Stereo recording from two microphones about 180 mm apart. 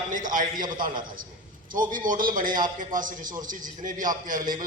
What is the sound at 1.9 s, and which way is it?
A man's voice, 45° right (ahead or behind).